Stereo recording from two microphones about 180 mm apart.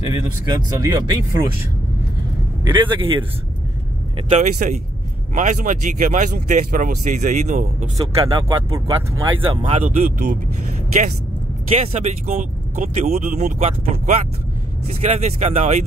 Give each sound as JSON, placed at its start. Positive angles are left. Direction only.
{"t": 0.1, "sound": "speech", "side_deg": -25}
{"t": 2.6, "sound": "speech", "side_deg": -25}
{"t": 4.3, "sound": "speech", "side_deg": -45}
{"t": 8.0, "sound": "speech", "side_deg": -25}
{"t": 9.6, "sound": "speech", "side_deg": -40}
{"t": 12.3, "sound": "speech", "side_deg": -50}
{"t": 13.6, "sound": "speech", "side_deg": -35}